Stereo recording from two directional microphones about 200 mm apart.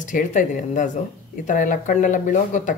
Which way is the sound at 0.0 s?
40° left (ahead or behind).